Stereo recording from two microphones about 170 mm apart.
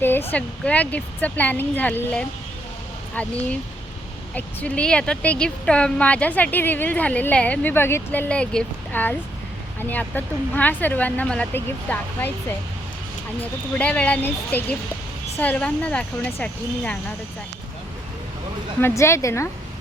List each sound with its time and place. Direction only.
0.0 s speech: 10° left (ahead or behind)
13.7 s speech: 10° left (ahead or behind)
18.8 s speech: 15° left (ahead or behind)